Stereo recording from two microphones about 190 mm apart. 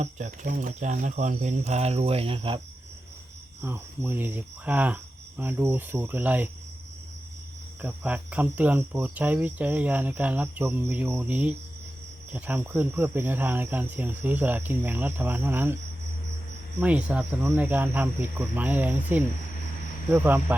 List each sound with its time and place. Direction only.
0.0 s speech: 40° right (ahead or behind)
3.6 s speech: 10° right (ahead or behind)
7.8 s speech: 5° right (ahead or behind)
16.8 s speech: 5° right (ahead or behind)